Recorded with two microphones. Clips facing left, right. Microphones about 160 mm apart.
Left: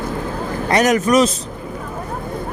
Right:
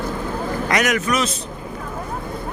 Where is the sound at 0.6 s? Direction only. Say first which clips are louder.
Left 6 dB; 35° left (ahead or behind).